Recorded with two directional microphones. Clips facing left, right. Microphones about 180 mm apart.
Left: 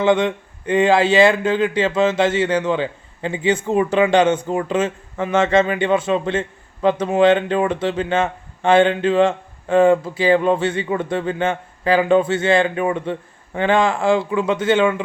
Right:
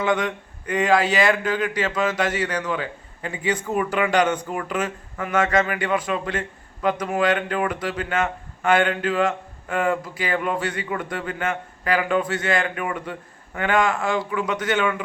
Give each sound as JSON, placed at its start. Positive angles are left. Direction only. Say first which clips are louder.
{"t": 0.0, "sound": "speech", "louder": "left 6 dB", "side_deg": 25}